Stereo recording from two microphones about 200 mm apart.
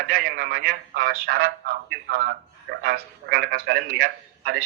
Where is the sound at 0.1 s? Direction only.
45° right (ahead or behind).